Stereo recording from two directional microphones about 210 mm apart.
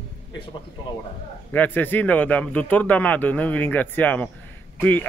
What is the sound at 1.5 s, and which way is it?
Speech, 10° left (ahead or behind).